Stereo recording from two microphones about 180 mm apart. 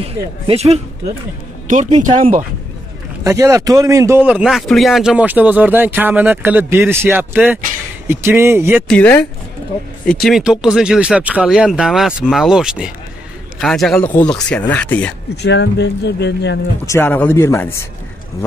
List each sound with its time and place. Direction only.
0.0 s speech: 35° right (ahead or behind)
3.3 s speech: 20° right (ahead or behind)
8.8 s speech: 10° left (ahead or behind)
15.4 s speech: 70° left (ahead or behind)
16.8 s speech: 15° left (ahead or behind)